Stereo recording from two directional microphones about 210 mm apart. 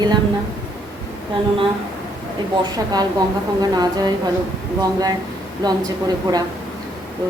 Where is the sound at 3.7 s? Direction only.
20° right (ahead or behind).